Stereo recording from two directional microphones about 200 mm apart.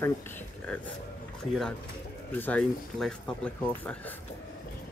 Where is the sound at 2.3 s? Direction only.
10° left (ahead or behind).